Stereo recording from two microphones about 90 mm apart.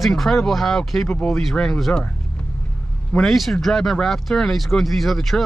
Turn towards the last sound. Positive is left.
turn(degrees=0)  # may be behind; listen again after turning